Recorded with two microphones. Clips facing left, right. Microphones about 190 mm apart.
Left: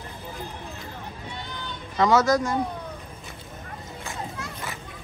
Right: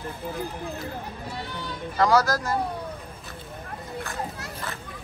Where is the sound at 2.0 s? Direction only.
Centre (ahead or behind).